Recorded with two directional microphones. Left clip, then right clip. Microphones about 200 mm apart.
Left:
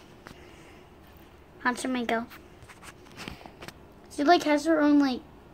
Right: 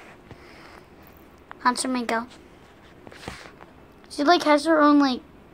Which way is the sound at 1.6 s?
5° left (ahead or behind).